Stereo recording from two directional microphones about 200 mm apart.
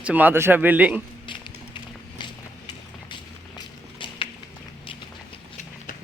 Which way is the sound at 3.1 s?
25° left (ahead or behind).